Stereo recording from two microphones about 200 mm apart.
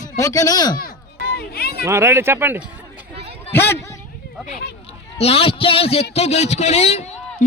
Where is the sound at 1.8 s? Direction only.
15° right (ahead or behind).